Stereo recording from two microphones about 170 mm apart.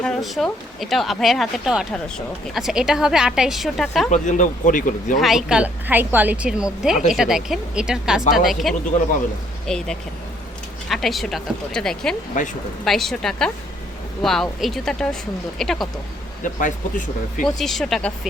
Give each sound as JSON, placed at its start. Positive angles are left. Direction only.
{"t": 0.0, "sound": "speech", "side_deg": 0}
{"t": 4.1, "sound": "speech", "side_deg": 50}
{"t": 5.2, "sound": "a woman's voice", "side_deg": -5}
{"t": 12.4, "sound": "speech", "side_deg": 50}
{"t": 12.8, "sound": "speech", "side_deg": 0}
{"t": 16.4, "sound": "speech", "side_deg": 50}
{"t": 17.4, "sound": "speech", "side_deg": 0}